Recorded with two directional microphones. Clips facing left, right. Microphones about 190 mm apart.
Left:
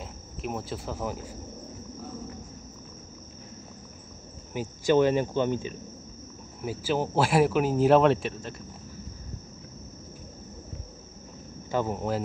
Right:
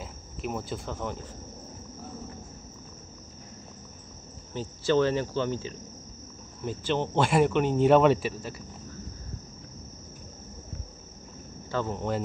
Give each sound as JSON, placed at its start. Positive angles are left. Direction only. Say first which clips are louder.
{"t": 0.0, "sound": "cricket", "louder": "even", "side_deg": 0}
{"t": 4.6, "sound": "cricket", "louder": "left 2 dB", "side_deg": 15}
{"t": 6.6, "sound": "speech", "louder": "left 1 dB", "side_deg": 10}
{"t": 11.7, "sound": "cricket", "louder": "left 2 dB", "side_deg": 10}